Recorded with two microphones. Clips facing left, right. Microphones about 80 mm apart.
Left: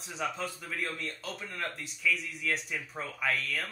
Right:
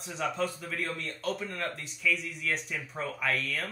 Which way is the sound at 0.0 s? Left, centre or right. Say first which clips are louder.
Right 3 dB; centre.